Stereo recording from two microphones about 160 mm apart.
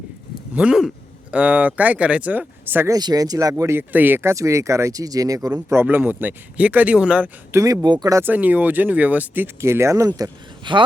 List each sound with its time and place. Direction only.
0.5 s speech: 5° right (ahead or behind)
7.6 s speech: 20° right (ahead or behind)
8.2 s speech: 10° right (ahead or behind); by 10.8 s 30° right (ahead or behind)